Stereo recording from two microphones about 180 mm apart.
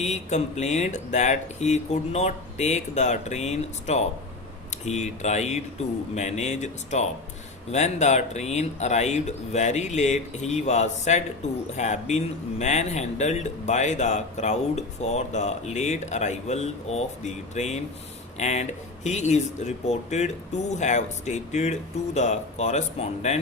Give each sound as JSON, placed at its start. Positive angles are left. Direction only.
{"t": 0.0, "sound": "speech", "side_deg": 40}